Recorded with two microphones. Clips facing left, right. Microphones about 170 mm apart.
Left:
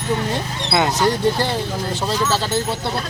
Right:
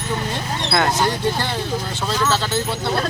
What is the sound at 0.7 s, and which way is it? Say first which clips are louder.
Speech: left 1 dB; 15° left (ahead or behind).